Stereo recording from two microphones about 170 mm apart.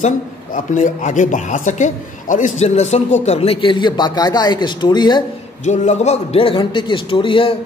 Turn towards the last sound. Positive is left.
turn(degrees=30)  # may be behind; listen again after turning